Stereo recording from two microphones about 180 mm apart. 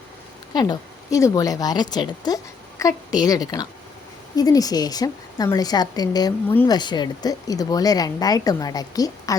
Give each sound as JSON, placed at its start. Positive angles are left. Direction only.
{"t": 0.5, "sound": "a woman's voice", "side_deg": 25}